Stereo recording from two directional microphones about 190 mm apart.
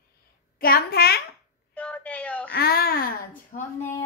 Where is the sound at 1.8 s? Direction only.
5° left (ahead or behind).